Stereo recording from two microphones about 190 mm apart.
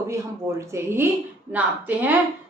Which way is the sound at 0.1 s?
15° right (ahead or behind).